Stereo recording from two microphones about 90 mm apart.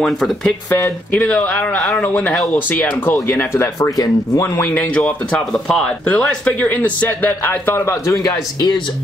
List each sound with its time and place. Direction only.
0.0 s speech: 5° left (ahead or behind)
0.7 s speech: 30° left (ahead or behind)
1.1 s speech: 20° left (ahead or behind)
3.9 s speech: 40° left (ahead or behind)
4.6 s speech: 20° left (ahead or behind)
5.0 s speech: 10° left (ahead or behind); by 8.7 s 45° left (ahead or behind)